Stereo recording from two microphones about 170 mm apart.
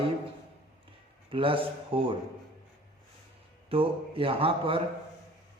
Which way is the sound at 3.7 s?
35° right (ahead or behind).